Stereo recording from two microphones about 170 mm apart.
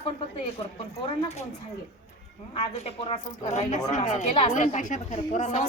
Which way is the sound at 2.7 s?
40° left (ahead or behind).